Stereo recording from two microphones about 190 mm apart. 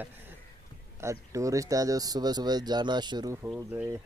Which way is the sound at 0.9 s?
15° right (ahead or behind).